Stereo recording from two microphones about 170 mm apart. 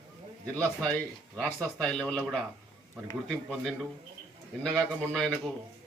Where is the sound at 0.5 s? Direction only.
5° left (ahead or behind).